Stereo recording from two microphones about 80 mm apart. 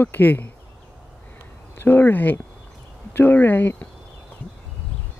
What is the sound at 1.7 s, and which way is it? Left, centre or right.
Speech, left.